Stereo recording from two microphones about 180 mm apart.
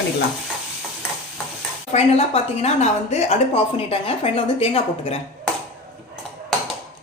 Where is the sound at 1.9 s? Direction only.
35° left (ahead or behind).